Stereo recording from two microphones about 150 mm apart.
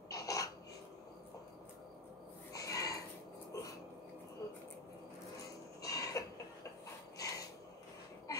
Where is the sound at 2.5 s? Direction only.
25° left (ahead or behind).